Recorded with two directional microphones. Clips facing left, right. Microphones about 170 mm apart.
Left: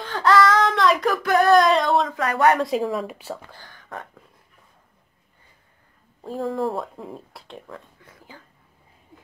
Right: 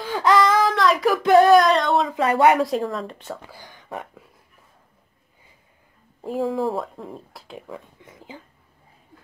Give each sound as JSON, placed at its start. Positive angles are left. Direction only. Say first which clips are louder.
{"t": 0.0, "sound": "a sound", "louder": "right 1 dB", "side_deg": -15}
{"t": 0.6, "sound": "child singing", "louder": "even", "side_deg": 0}
{"t": 1.1, "sound": "a sound", "louder": "right 5 dB", "side_deg": -25}
{"t": 1.5, "sound": "a sound", "louder": "right 1 dB", "side_deg": 0}
{"t": 2.1, "sound": "speech", "louder": "right 5 dB", "side_deg": -25}
{"t": 2.5, "sound": "speech", "louder": "even", "side_deg": 0}
{"t": 3.4, "sound": "speech", "louder": "right 3 dB", "side_deg": -15}
{"t": 6.3, "sound": "speech", "louder": "right 2 dB", "side_deg": 0}
{"t": 8.0, "sound": "speech", "louder": "right 5 dB", "side_deg": -20}